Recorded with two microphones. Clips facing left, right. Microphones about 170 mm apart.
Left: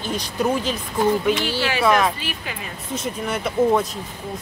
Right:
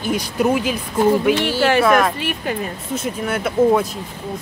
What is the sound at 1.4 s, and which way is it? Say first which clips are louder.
Speech: right 7 dB; 55° right (ahead or behind).